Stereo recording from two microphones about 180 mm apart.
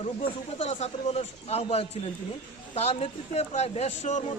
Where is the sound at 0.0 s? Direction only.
35° left (ahead or behind).